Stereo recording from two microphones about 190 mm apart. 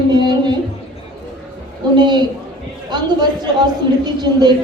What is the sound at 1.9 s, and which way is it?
A man's voice, 25° right (ahead or behind).